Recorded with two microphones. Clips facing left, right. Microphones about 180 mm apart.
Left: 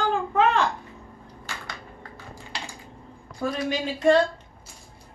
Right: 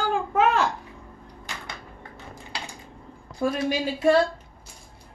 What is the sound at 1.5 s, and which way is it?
Typewriter, 20° right (ahead or behind).